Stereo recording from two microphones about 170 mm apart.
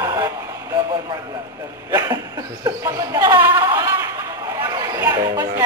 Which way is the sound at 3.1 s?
15° right (ahead or behind).